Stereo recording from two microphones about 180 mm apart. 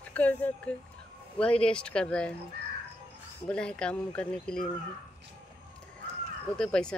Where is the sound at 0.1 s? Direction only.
10° left (ahead or behind).